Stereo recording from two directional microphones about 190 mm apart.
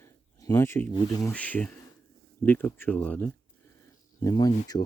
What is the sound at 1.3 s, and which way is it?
Speech, 5° left (ahead or behind).